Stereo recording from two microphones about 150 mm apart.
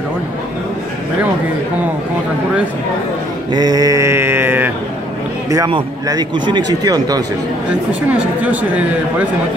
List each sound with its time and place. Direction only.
3.5 s mantra: 25° right (ahead or behind)
5.7 s speech: 30° right (ahead or behind)
8.1 s mantra: 10° right (ahead or behind)